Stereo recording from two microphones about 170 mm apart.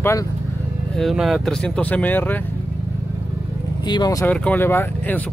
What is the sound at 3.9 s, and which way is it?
Speech, 20° left (ahead or behind).